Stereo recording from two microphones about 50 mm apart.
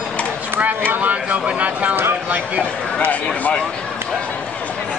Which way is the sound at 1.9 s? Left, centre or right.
Right.